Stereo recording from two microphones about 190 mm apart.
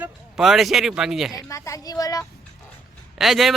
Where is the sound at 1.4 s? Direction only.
15° left (ahead or behind).